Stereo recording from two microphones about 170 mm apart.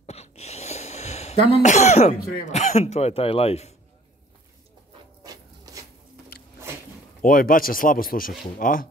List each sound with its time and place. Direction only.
0.0 s gasp: 40° left (ahead or behind)
1.5 s speech: 45° left (ahead or behind)
5.2 s rub: 20° right (ahead or behind)
7.2 s speech: 55° left (ahead or behind)